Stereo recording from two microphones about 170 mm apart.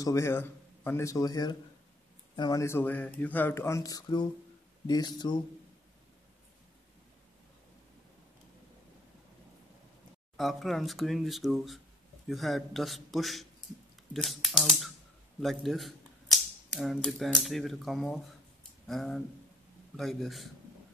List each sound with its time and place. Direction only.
0.0 s speech: 15° left (ahead or behind)
10.3 s speech: centre (ahead or behind)